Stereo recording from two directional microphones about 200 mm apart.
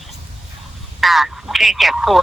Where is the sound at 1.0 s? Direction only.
Centre (ahead or behind).